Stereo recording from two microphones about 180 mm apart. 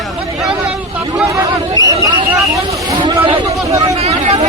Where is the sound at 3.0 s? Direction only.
25° right (ahead or behind).